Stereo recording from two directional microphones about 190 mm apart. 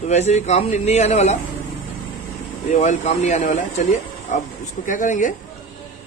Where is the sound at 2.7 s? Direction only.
35° left (ahead or behind).